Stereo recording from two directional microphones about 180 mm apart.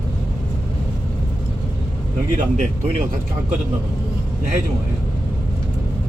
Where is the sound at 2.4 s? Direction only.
45° right (ahead or behind).